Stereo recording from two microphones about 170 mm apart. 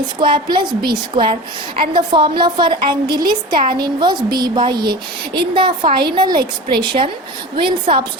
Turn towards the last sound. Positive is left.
turn(degrees=-30)  # may be behind; listen again after turning